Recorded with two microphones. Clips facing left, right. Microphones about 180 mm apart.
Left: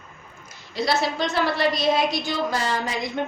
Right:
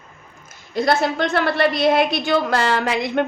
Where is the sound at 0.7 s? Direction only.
50° right (ahead or behind).